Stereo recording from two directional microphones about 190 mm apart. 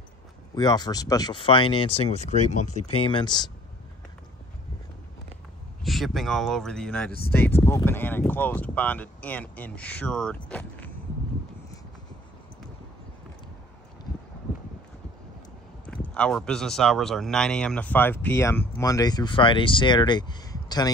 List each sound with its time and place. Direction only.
0.6 s speech: 20° left (ahead or behind)
5.9 s speech: centre (ahead or behind)
15.9 s speech: 5° left (ahead or behind)